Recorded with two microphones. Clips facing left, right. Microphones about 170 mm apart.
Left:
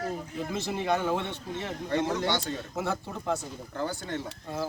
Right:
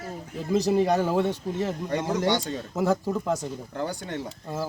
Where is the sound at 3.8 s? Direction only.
15° right (ahead or behind).